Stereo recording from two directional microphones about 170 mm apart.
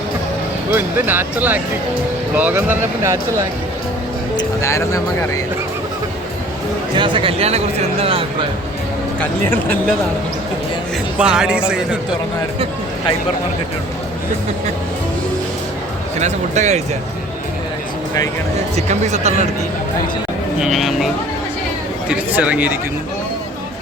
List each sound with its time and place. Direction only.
0.7 s speech: 15° right (ahead or behind)
4.4 s speech: 20° left (ahead or behind)
6.9 s speech: 30° right (ahead or behind)
11.2 s speech: 5° right (ahead or behind)
16.2 s speech: 45° right (ahead or behind)
18.8 s speech: 40° right (ahead or behind)
20.6 s speech: centre (ahead or behind)
22.4 s speech: 10° right (ahead or behind)